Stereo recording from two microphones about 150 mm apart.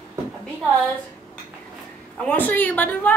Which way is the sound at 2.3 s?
10° left (ahead or behind).